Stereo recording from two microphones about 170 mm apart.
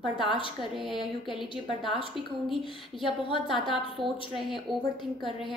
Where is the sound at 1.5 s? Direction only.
30° left (ahead or behind).